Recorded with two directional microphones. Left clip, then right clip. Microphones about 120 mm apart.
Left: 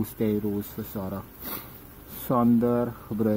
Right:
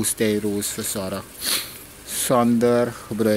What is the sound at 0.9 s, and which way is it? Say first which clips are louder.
Speech: right 7 dB; 20° right (ahead or behind).